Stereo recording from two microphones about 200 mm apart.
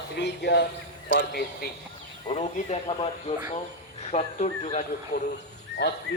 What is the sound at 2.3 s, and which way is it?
Speech, 35° left (ahead or behind).